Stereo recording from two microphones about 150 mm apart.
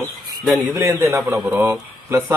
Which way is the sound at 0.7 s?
15° right (ahead or behind).